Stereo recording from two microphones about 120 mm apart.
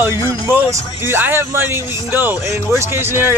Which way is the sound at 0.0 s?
20° right (ahead or behind).